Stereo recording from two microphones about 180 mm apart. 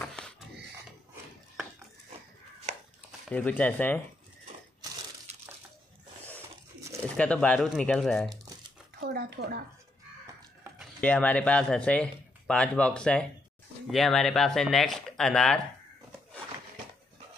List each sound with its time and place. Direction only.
0.0 s a sound: 5° left (ahead or behind)
2.7 s a sound: 40° right (ahead or behind)
3.3 s speech: 10° left (ahead or behind)
7.2 s speech: 5° left (ahead or behind)
9.0 s speech: 60° right (ahead or behind)
11.0 s speech: 10° left (ahead or behind)